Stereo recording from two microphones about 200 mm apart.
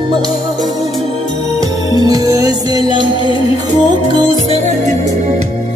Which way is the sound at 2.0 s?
20° right (ahead or behind).